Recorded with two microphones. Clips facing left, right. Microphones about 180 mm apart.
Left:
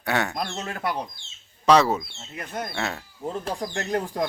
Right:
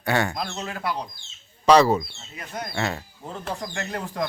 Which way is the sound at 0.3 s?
50° left (ahead or behind).